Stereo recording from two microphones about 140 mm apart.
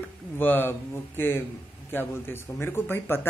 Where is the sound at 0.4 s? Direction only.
15° left (ahead or behind).